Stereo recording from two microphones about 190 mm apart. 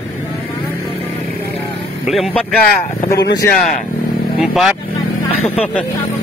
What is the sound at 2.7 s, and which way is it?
Speech, 45° left (ahead or behind).